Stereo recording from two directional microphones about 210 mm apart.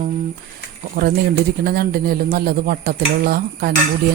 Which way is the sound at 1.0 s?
45° right (ahead or behind).